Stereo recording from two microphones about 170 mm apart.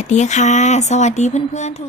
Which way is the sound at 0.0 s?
40° left (ahead or behind).